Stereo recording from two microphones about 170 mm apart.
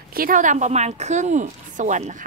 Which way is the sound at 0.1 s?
55° right (ahead or behind).